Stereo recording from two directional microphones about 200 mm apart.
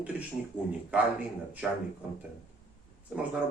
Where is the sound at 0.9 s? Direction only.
5° right (ahead or behind).